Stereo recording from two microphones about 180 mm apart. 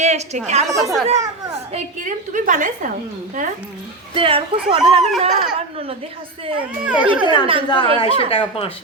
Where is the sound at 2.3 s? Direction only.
45° right (ahead or behind).